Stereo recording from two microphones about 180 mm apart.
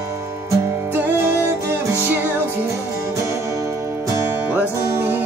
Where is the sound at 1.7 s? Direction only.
10° right (ahead or behind).